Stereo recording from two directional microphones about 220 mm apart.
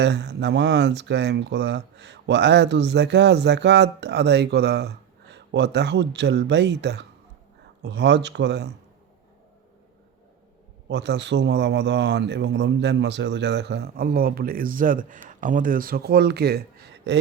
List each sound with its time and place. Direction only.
0.0 s speech: 55° right (ahead or behind)
10.8 s speech: 50° right (ahead or behind)